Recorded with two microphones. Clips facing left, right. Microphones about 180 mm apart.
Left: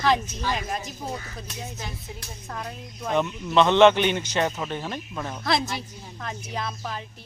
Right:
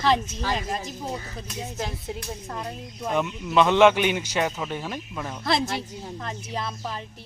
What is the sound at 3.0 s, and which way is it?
A man's voice, 5° right (ahead or behind).